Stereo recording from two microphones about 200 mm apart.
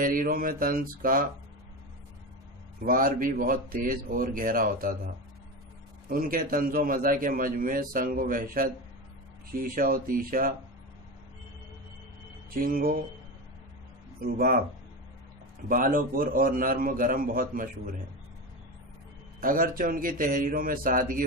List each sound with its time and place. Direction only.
0.0 s a man's voice: 45° right (ahead or behind)
2.8 s a man's voice: 45° right (ahead or behind)
12.4 s a man's voice: 45° right (ahead or behind)
14.2 s a man's voice: 45° right (ahead or behind)
15.7 s a man's voice: 45° right (ahead or behind)
19.4 s a man's voice: 45° right (ahead or behind)